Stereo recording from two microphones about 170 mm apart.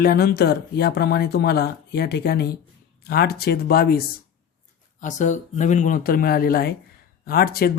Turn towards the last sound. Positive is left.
turn(degrees=65)  # may be behind; listen again after turning